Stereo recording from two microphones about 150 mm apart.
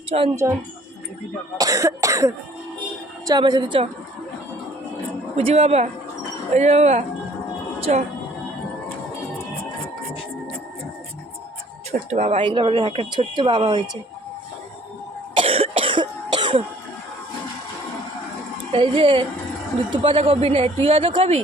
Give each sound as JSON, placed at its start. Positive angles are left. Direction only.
{"t": 0.1, "sound": "speech", "side_deg": -45}
{"t": 1.5, "sound": "cough", "side_deg": -20}
{"t": 3.2, "sound": "speech", "side_deg": -25}
{"t": 5.4, "sound": "speech", "side_deg": -45}
{"t": 7.8, "sound": "music", "side_deg": -45}
{"t": 11.9, "sound": "speech", "side_deg": -50}
{"t": 12.4, "sound": "speech", "side_deg": -35}
{"t": 15.4, "sound": "cough", "side_deg": -40}
{"t": 18.7, "sound": "speech", "side_deg": -35}